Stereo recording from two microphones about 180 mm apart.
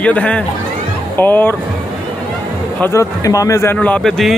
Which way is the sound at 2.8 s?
15° left (ahead or behind).